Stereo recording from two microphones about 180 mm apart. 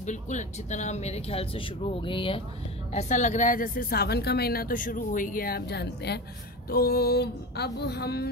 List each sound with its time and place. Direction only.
0.0 s speech: 40° left (ahead or behind)
2.9 s speech: 40° left (ahead or behind); by 6.2 s 65° left (ahead or behind)
6.7 s a sound: 60° left (ahead or behind)